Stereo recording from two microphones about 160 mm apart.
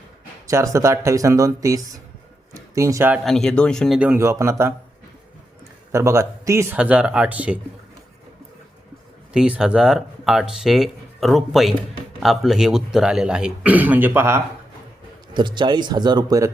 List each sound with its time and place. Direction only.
0.4 s speech: 20° right (ahead or behind)
3.2 s speech: 5° left (ahead or behind); by 4.7 s 15° right (ahead or behind)
5.9 s speech: 15° right (ahead or behind)
6.7 s speech: 5° right (ahead or behind)
9.3 s speech: 5° right (ahead or behind)
15.3 s speech: 30° right (ahead or behind)